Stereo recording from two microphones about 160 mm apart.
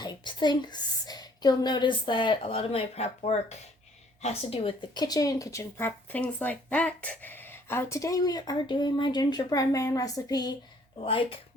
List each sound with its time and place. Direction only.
0.0 s a woman's voice: 25° left (ahead or behind)
11.0 s speech: 35° left (ahead or behind)